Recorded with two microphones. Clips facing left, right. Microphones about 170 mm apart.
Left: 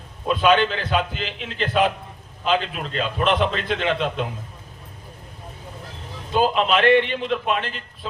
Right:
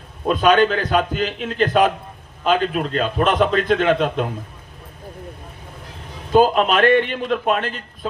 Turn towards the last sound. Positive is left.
turn(degrees=-45)  # may be behind; listen again after turning